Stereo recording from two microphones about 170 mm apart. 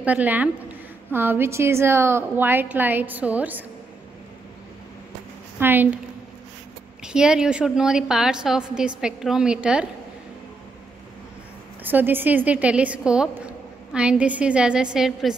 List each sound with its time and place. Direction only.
0.0 s a woman's voice: 10° right (ahead or behind)
5.6 s a woman's voice: 10° right (ahead or behind)
7.0 s a woman's voice: 5° right (ahead or behind)
11.8 s a woman's voice: 10° right (ahead or behind)